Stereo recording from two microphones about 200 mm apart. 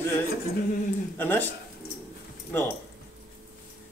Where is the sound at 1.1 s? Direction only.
10° left (ahead or behind).